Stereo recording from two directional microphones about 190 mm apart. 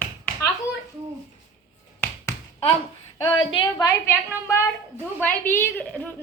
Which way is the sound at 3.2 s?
25° left (ahead or behind).